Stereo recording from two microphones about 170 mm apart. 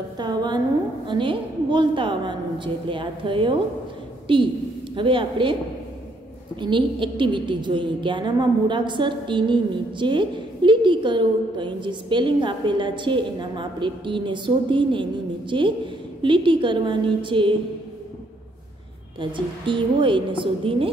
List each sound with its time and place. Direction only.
0.2 s a sound: 25° right (ahead or behind)
1.0 s a woman's voice: 30° right (ahead or behind)
6.6 s a woman's voice: 30° right (ahead or behind)
19.1 s a woman's voice: 30° right (ahead or behind)